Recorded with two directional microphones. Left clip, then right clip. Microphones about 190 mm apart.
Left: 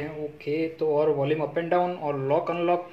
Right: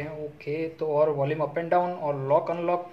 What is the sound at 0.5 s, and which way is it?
Speech, 20° left (ahead or behind).